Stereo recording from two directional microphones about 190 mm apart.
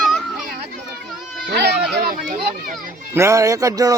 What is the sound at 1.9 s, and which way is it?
Children playing, 50° right (ahead or behind).